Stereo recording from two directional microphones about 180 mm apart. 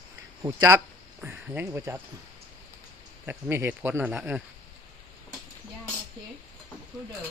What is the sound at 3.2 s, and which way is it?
Speech, 10° right (ahead or behind).